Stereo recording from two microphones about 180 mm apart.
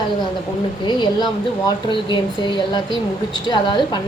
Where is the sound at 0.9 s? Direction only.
25° left (ahead or behind).